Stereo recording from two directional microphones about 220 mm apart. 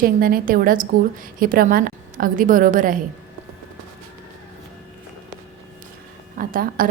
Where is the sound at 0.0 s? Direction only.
40° right (ahead or behind).